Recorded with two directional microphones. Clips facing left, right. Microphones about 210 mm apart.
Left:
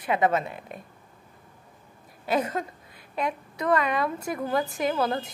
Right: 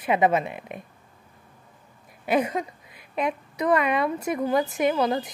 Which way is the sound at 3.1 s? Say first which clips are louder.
Right 3 dB; 20° right (ahead or behind).